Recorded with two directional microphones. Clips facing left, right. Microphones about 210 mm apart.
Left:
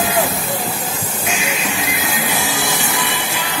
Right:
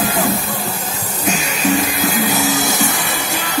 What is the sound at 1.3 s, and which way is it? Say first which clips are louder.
Music: right 7 dB; 40° right (ahead or behind).